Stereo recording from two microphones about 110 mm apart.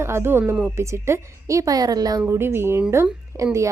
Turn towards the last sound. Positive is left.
turn(degrees=-25)  # may be behind; listen again after turning